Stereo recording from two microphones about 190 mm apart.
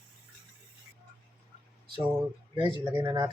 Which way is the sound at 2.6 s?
25° right (ahead or behind).